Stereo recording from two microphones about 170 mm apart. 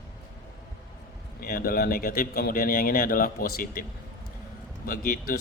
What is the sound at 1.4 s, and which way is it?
Speech, 60° left (ahead or behind).